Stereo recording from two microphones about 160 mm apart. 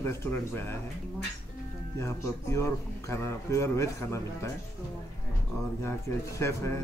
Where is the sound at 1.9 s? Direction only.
15° left (ahead or behind).